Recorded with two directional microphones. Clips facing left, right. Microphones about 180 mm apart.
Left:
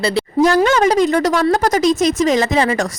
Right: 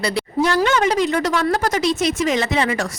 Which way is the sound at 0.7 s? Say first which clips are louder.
Left 4 dB; 40° left (ahead or behind).